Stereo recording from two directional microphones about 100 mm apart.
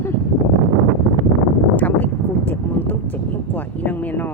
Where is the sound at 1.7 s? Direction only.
15° left (ahead or behind).